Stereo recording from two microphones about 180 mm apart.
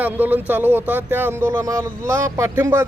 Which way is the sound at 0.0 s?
10° right (ahead or behind).